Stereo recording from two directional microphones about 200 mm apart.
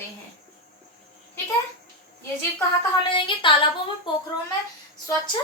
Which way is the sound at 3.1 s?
25° left (ahead or behind).